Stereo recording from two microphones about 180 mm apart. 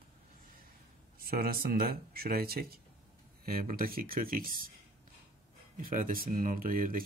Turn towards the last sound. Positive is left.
turn(degrees=-50)  # may be behind; listen again after turning